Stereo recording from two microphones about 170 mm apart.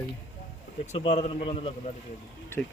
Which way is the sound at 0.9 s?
35° left (ahead or behind).